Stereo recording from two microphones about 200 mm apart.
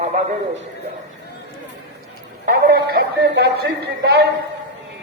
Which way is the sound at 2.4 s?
45° right (ahead or behind).